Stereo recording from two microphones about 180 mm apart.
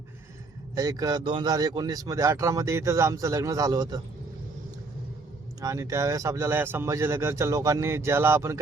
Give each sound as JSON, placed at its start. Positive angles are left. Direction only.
{"t": 0.8, "sound": "speech", "side_deg": -20}
{"t": 5.5, "sound": "speech", "side_deg": -15}